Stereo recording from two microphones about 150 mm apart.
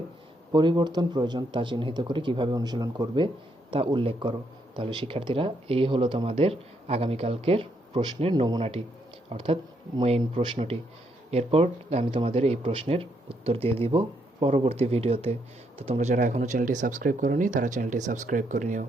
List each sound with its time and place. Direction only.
0.5 s speech: 30° right (ahead or behind); by 18.9 s 55° right (ahead or behind)